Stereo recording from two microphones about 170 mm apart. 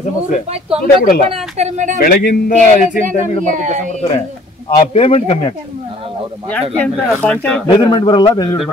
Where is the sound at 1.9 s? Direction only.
60° left (ahead or behind).